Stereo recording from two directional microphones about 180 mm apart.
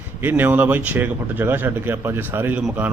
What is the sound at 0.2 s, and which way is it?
Speech, 10° right (ahead or behind).